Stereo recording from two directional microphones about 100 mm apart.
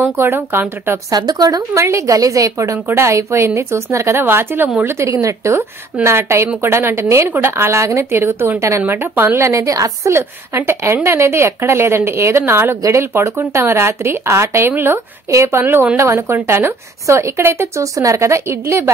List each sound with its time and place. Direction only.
0.0 s a woman's voice: 25° right (ahead or behind)
1.1 s speech: 40° right (ahead or behind)
1.7 s a woman's voice: 30° right (ahead or behind)